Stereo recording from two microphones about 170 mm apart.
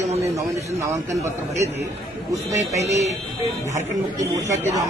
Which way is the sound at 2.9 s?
40° right (ahead or behind).